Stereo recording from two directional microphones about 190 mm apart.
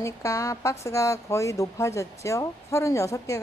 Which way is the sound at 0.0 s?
15° left (ahead or behind).